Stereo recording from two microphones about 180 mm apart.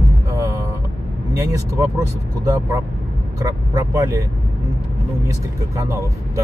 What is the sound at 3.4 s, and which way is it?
Speech, 20° right (ahead or behind).